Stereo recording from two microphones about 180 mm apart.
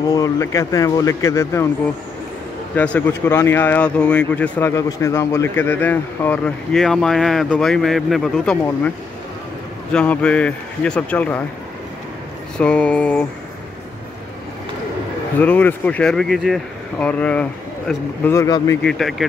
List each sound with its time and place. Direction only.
0.1 s speech: 15° left (ahead or behind)
2.7 s speech: 10° left (ahead or behind)
9.9 s speech: 5° left (ahead or behind)
12.5 s speech: 5° left (ahead or behind)
15.3 s speech: 10° left (ahead or behind)
18.8 s speech: centre (ahead or behind)